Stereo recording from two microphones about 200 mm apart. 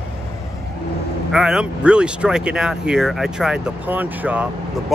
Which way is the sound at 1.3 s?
5° right (ahead or behind).